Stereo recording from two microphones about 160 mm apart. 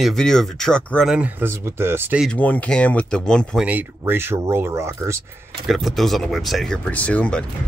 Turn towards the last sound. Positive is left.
turn(degrees=5)  # may be behind; listen again after turning